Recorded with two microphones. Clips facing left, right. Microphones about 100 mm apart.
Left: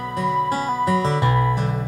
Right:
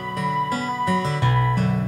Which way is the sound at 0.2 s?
35° left (ahead or behind).